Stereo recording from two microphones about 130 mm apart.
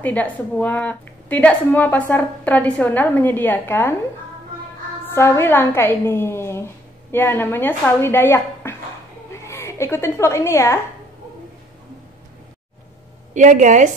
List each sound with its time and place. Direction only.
0.0 s a woman's voice: 10° left (ahead or behind)
5.0 s a woman's voice: 20° left (ahead or behind)
13.3 s a woman's voice: 70° right (ahead or behind)